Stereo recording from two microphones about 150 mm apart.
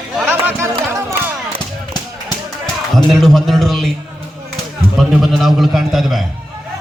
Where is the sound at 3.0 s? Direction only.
Centre (ahead or behind).